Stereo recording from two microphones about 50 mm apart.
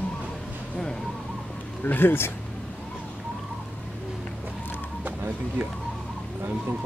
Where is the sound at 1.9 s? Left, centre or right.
Left.